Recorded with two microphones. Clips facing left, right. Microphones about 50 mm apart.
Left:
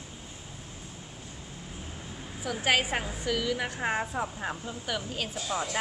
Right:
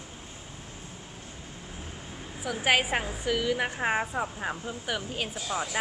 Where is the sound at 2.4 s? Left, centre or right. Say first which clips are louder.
Right 2 dB; centre.